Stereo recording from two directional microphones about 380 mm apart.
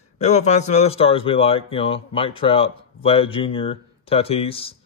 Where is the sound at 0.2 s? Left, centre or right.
Centre.